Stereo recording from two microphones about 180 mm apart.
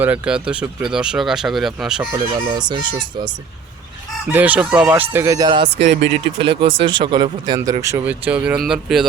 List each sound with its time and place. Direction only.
0.0 s speech: 5° right (ahead or behind)
2.3 s speech: 25° right (ahead or behind)
4.3 s chicken: 10° right (ahead or behind)
5.6 s speech: 75° right (ahead or behind)
6.4 s speech: 30° right (ahead or behind); by 9.0 s centre (ahead or behind)